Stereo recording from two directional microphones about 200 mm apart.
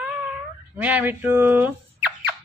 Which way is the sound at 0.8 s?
10° right (ahead or behind).